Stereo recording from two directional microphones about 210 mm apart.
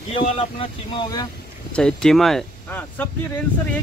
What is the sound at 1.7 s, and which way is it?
Speech, 5° left (ahead or behind).